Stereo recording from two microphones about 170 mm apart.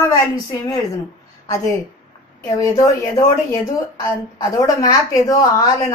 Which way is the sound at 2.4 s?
20° left (ahead or behind).